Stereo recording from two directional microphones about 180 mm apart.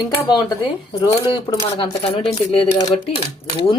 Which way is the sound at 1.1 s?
30° left (ahead or behind).